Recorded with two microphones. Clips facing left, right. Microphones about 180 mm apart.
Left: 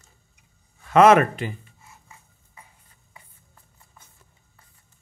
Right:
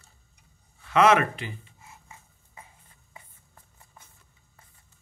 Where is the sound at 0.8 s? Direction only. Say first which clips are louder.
Left 6 dB; 50° left (ahead or behind).